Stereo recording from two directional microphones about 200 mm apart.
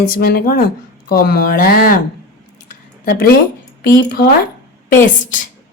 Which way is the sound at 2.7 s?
45° left (ahead or behind).